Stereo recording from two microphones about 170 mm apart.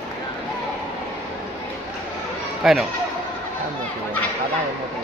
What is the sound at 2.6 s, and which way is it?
Speech, centre (ahead or behind).